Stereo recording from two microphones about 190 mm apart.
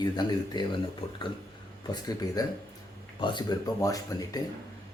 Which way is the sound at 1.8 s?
20° left (ahead or behind).